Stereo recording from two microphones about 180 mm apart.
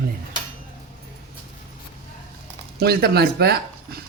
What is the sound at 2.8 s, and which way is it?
Speech, 60° right (ahead or behind).